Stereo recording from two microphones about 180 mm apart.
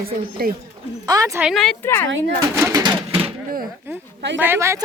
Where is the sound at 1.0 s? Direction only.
20° right (ahead or behind).